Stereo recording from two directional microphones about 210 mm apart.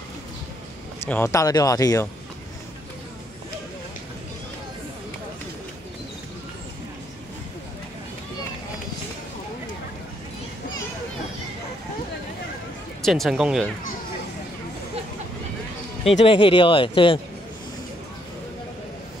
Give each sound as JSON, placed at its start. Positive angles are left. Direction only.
{"t": 1.0, "sound": "speech", "side_deg": 10}
{"t": 13.0, "sound": "speech", "side_deg": 0}
{"t": 16.0, "sound": "speech", "side_deg": 25}